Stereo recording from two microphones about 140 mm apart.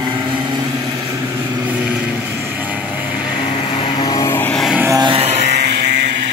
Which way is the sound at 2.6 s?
10° right (ahead or behind).